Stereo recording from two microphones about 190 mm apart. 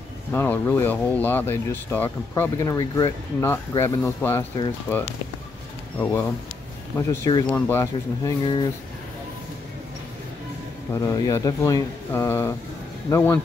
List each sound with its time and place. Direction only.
0.3 s speech: 10° left (ahead or behind)
7.0 s speech: 15° left (ahead or behind)
10.9 s speech: 15° left (ahead or behind)